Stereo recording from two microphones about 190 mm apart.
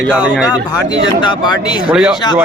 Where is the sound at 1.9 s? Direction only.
5° right (ahead or behind).